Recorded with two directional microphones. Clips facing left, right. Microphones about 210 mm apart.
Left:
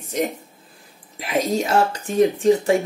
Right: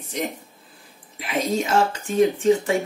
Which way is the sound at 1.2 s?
40° left (ahead or behind).